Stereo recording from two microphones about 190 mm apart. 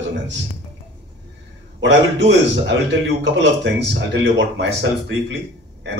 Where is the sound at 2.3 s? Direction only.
70° right (ahead or behind).